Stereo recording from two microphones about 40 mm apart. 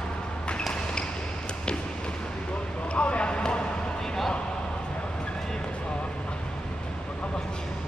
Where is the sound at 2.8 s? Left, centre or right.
Left.